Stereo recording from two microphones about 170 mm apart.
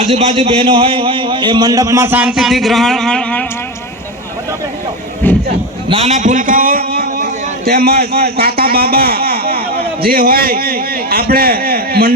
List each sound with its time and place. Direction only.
0.0 s a man's voice: 40° right (ahead or behind); by 3.4 s 5° left (ahead or behind)
5.2 s a sound: 10° left (ahead or behind)
5.9 s a man's voice: 40° right (ahead or behind); by 12.1 s 65° right (ahead or behind)